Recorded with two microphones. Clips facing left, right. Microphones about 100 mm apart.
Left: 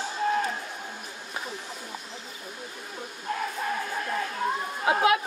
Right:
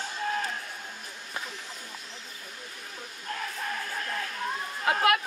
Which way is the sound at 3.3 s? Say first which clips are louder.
Left 5 dB; 10° left (ahead or behind).